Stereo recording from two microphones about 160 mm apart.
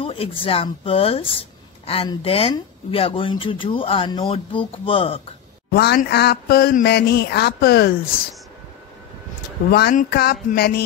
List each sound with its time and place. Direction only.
0.0 s a sound: 35° left (ahead or behind)
0.4 s speech: 35° left (ahead or behind)
5.7 s mantra: 85° left
9.7 s speech: 70° left (ahead or behind)